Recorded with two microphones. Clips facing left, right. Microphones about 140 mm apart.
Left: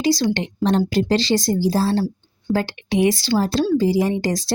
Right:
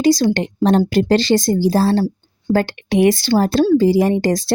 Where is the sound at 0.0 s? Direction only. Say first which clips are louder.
Right 5 dB; 45° right (ahead or behind).